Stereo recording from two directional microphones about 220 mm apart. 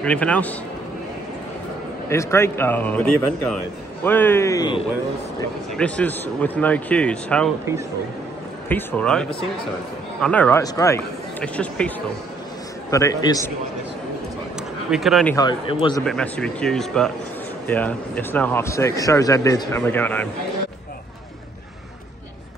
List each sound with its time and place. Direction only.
0.0 s speech: 5° left (ahead or behind)
2.0 s speech: 10° left (ahead or behind)
5.8 s speech: 5° left (ahead or behind)
8.6 s speech: 5° left (ahead or behind)
12.9 s speech: 15° left (ahead or behind)
14.9 s speech: centre (ahead or behind)
15.3 s speech: 20° left (ahead or behind)
16.0 s speech: 5° left (ahead or behind)